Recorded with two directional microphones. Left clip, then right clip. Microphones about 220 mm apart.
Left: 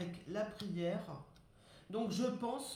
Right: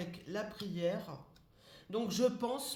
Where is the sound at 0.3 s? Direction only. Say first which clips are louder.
Even; 40° right (ahead or behind).